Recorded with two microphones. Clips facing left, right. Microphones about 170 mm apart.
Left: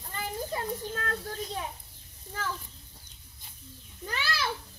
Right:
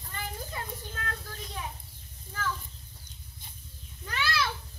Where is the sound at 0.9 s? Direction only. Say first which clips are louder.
Left 5 dB; 35° left (ahead or behind).